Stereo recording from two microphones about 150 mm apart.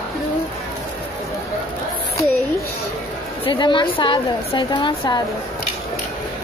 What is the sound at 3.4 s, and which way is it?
A woman's voice, 35° left (ahead or behind).